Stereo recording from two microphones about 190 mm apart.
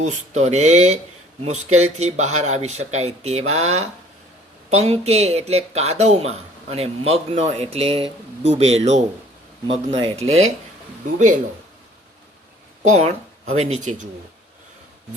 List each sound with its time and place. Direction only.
0.0 s speech: 35° right (ahead or behind)
10.2 s speech: 90° right
12.8 s speech: 35° right (ahead or behind)